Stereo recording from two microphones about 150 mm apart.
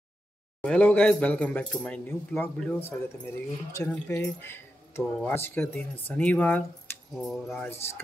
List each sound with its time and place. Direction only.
0.6 s speech: 10° left (ahead or behind)
7.2 s speech: centre (ahead or behind)